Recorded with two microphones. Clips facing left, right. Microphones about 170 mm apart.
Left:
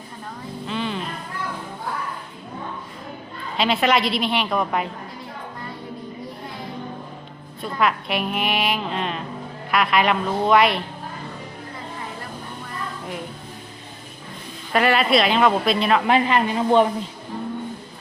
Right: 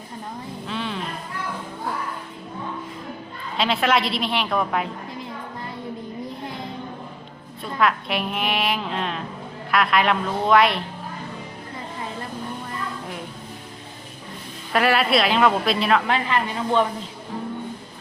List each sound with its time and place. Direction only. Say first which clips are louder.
0.7 s music: left 2 dB; centre (ahead or behind)
3.6 s a woman's voice: left 1 dB; centre (ahead or behind)
7.6 s a woman's voice: even; centre (ahead or behind)
14.7 s a woman's voice: left 1 dB; centre (ahead or behind)
16.0 s speech: left 4 dB; 20° left (ahead or behind)